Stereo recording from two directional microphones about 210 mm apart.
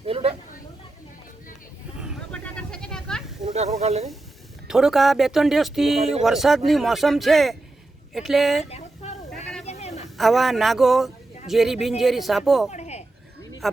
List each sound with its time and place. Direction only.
0.0 s chatter: 30° right (ahead or behind)
2.0 s hubbub: 5° right (ahead or behind)
2.4 s sheep: 5° left (ahead or behind)
3.5 s speech: 30° right (ahead or behind)
4.7 s speech: centre (ahead or behind)
8.7 s sheep: 30° left (ahead or behind)
9.6 s a sound: 30° left (ahead or behind)
10.2 s speech: centre (ahead or behind)
12.7 s goat: 30° left (ahead or behind)